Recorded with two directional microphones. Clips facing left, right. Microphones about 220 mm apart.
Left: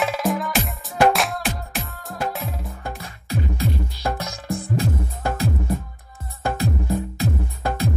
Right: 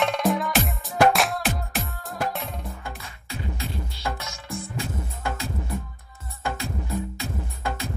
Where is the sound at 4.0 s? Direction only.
35° left (ahead or behind).